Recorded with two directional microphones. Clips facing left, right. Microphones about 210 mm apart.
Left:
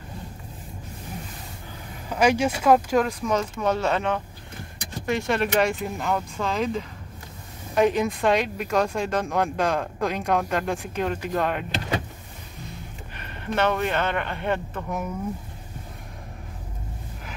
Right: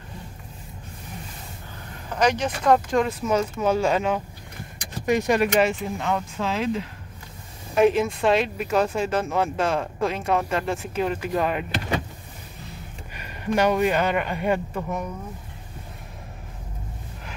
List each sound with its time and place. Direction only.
2.0 s speech: 10° left (ahead or behind); by 5.5 s 15° right (ahead or behind)
5.6 s speech: centre (ahead or behind)
13.1 s a man's voice: 10° right (ahead or behind)